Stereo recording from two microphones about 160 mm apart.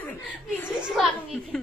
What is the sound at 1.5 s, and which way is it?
Speech, 5° left (ahead or behind).